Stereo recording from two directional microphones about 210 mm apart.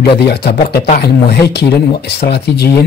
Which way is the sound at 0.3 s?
50° left (ahead or behind).